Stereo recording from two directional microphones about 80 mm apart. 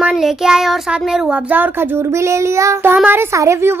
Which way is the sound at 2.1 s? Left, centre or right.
Right.